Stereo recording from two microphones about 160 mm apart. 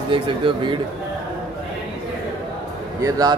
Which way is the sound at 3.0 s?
20° right (ahead or behind).